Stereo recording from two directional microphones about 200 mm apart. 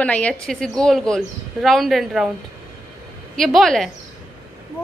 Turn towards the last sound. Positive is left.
turn(degrees=0)  # may be behind; listen again after turning